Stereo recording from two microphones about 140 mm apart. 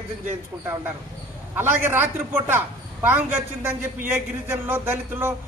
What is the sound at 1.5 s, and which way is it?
A man's voice, 15° right (ahead or behind).